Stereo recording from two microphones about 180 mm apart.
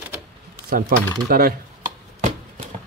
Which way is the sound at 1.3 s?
55° right (ahead or behind).